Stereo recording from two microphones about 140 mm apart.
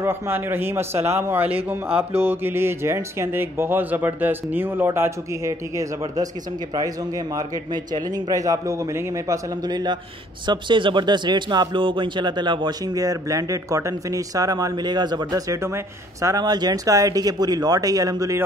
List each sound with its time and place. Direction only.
0.0 s speech: 15° right (ahead or behind)